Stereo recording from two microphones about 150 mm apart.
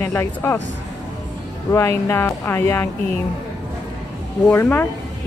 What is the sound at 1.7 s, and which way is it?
Speech, 15° left (ahead or behind).